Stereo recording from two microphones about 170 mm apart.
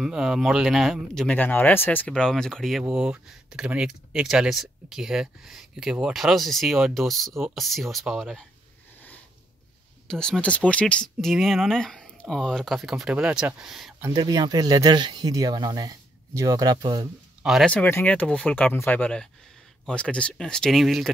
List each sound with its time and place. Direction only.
0.0 s speech: centre (ahead or behind)
10.0 s speech: 5° left (ahead or behind)
14.1 s speech: 25° right (ahead or behind)
17.4 s speech: centre (ahead or behind)